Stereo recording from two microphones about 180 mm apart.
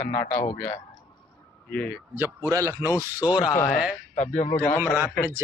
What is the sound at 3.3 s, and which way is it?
Speech, 25° left (ahead or behind).